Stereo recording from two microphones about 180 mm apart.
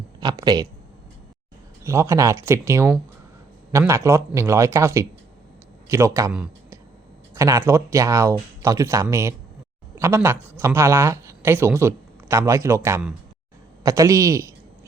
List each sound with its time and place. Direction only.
0.2 s speech: 20° right (ahead or behind)
1.8 s speech: 15° right (ahead or behind)
6.3 s a sound: 5° right (ahead or behind)
7.3 s speech: 15° right (ahead or behind)